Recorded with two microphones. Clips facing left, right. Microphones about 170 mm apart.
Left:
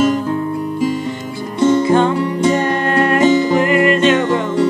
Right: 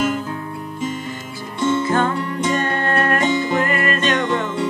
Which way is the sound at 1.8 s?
20° left (ahead or behind).